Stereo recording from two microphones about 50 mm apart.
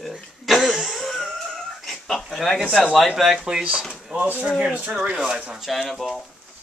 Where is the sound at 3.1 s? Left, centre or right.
Centre.